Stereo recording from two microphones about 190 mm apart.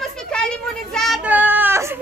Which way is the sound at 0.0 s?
5° left (ahead or behind).